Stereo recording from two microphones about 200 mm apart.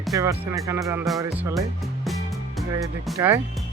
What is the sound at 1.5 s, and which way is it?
Music, centre (ahead or behind).